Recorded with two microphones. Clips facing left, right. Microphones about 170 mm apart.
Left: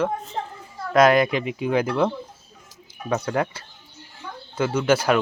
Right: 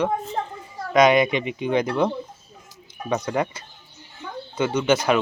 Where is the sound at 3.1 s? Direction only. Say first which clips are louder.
Even; 5° left (ahead or behind).